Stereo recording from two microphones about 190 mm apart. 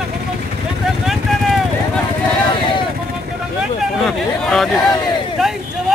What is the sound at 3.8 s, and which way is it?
Speech, centre (ahead or behind).